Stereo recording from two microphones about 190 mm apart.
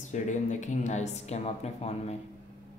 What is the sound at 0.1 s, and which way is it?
Speech, 40° left (ahead or behind).